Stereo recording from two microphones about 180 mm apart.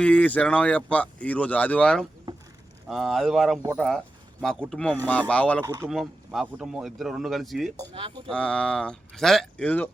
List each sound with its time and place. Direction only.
0.0 s speech: 10° left (ahead or behind)
3.8 s a sound: centre (ahead or behind)
4.7 s speech: 5° left (ahead or behind)
5.6 s speech: 20° right (ahead or behind)
5.9 s speech: centre (ahead or behind)
7.9 s speech: 30° right (ahead or behind)
8.3 s speech: 5° left (ahead or behind)